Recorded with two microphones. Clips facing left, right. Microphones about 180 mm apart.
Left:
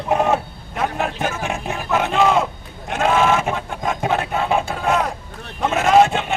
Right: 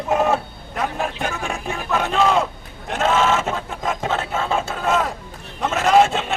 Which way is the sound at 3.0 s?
15° left (ahead or behind).